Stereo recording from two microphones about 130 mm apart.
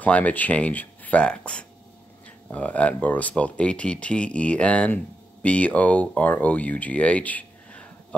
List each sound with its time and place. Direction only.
0.0 s speech: 10° left (ahead or behind)